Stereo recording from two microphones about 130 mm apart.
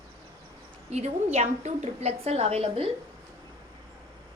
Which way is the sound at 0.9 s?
55° right (ahead or behind).